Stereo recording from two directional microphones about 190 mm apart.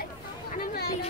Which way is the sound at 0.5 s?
50° left (ahead or behind).